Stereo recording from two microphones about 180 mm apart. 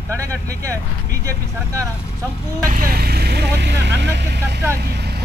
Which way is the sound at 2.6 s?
50° right (ahead or behind).